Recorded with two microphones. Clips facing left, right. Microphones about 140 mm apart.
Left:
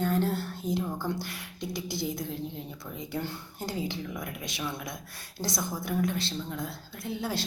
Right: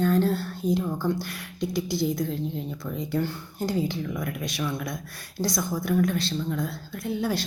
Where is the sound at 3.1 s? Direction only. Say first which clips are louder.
Right 6 dB; 20° left (ahead or behind).